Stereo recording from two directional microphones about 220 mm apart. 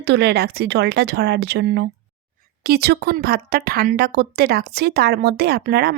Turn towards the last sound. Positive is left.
turn(degrees=-45)  # may be behind; listen again after turning